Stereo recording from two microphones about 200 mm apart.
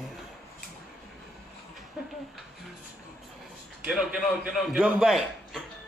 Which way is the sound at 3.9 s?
5° right (ahead or behind).